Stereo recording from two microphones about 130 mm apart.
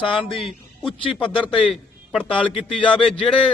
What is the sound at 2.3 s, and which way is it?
Speech, 40° left (ahead or behind).